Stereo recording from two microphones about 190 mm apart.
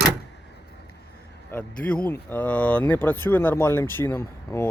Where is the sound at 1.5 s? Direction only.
5° left (ahead or behind).